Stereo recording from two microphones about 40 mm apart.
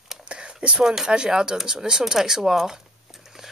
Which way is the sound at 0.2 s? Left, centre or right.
Right.